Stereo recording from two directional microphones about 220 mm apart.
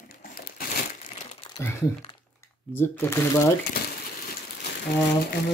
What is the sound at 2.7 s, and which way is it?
Speech, 10° left (ahead or behind).